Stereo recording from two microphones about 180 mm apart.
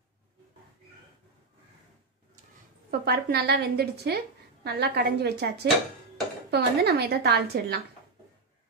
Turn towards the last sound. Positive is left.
turn(degrees=-65)  # may be behind; listen again after turning